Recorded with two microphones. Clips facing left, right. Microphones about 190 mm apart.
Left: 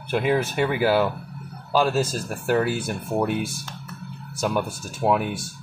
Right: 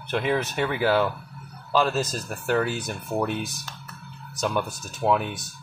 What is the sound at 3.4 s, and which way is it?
Speech, 30° left (ahead or behind).